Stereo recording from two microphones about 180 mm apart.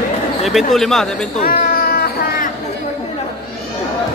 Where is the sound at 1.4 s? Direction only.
55° left (ahead or behind).